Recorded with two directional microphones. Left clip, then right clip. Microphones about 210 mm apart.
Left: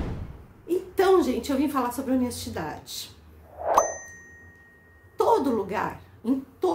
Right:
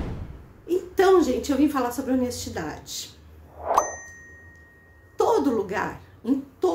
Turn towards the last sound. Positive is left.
turn(degrees=5)  # may be behind; listen again after turning